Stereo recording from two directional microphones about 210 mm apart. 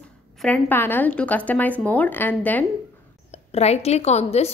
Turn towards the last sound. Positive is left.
turn(degrees=30)  # may be behind; listen again after turning